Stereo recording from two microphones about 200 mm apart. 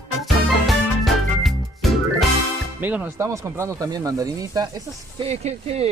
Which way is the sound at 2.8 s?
10° right (ahead or behind).